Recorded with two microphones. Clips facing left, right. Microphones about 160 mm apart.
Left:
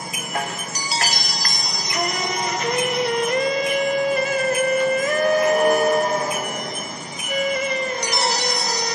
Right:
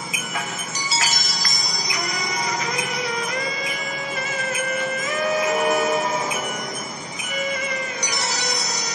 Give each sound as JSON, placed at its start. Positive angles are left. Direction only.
{"t": 1.5, "sound": "jingle bell", "side_deg": 55}
{"t": 2.6, "sound": "music", "side_deg": 60}